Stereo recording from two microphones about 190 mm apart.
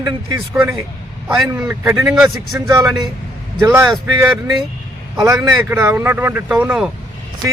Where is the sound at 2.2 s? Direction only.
20° right (ahead or behind).